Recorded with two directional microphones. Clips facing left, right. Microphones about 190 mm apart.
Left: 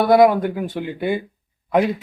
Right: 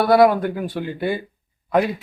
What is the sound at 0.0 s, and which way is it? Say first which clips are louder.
Speech: left 1 dB; 15° left (ahead or behind).